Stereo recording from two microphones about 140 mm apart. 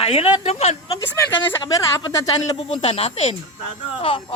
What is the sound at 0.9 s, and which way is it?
Speech, 20° left (ahead or behind).